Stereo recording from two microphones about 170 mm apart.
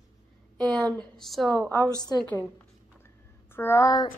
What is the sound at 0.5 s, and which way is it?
A woman's voice, 5° left (ahead or behind).